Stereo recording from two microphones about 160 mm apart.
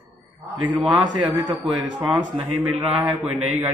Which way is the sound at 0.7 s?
5° right (ahead or behind).